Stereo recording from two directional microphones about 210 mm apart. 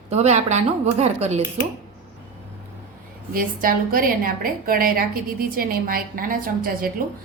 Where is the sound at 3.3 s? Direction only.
40° right (ahead or behind).